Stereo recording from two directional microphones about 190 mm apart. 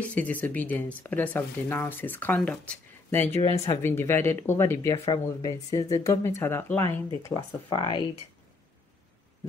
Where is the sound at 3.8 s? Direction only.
10° left (ahead or behind).